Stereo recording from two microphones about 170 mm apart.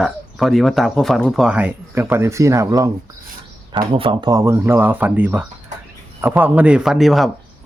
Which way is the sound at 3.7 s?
30° right (ahead or behind).